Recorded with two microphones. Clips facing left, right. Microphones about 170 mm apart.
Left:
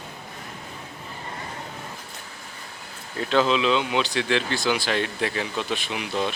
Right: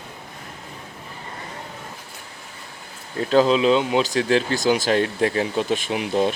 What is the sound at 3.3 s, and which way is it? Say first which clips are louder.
Speech: right 5 dB; 40° right (ahead or behind).